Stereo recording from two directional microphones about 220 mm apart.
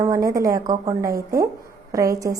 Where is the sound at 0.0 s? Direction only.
15° right (ahead or behind).